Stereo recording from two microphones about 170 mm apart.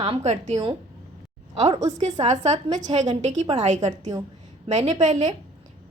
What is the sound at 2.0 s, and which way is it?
A woman's voice, 40° right (ahead or behind).